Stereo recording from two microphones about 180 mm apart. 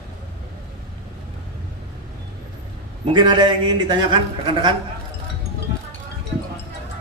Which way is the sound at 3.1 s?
25° right (ahead or behind).